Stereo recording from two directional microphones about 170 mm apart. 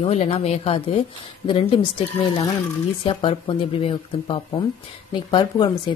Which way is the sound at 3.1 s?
30° left (ahead or behind).